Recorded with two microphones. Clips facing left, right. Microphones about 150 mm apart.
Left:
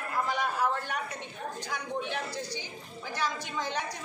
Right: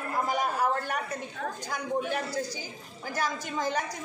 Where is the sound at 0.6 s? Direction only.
45° right (ahead or behind).